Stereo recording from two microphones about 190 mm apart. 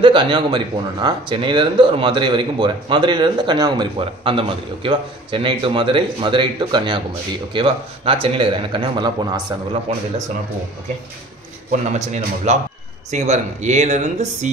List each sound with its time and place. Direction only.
0.0 s a man's voice: 25° right (ahead or behind)
11.7 s speech: 40° right (ahead or behind)